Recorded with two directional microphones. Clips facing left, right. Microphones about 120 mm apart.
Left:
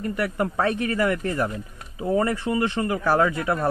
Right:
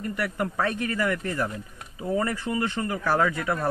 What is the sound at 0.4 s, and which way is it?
Speech, 30° left (ahead or behind).